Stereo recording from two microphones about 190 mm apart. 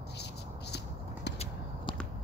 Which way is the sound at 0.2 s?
60° left (ahead or behind).